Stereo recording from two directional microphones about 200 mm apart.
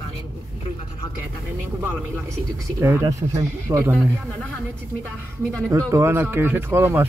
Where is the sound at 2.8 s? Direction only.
15° right (ahead or behind).